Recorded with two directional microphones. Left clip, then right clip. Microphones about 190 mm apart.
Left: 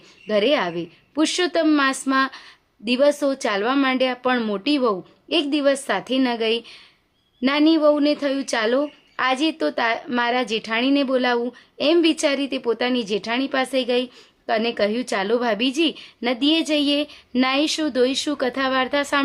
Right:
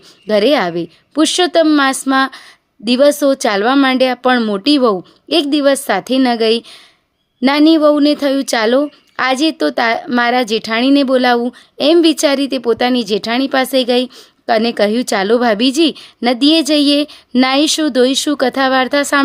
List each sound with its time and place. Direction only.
0.3 s a woman's voice: 35° right (ahead or behind)